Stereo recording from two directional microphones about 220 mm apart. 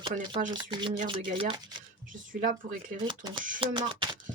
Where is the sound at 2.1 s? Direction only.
35° right (ahead or behind).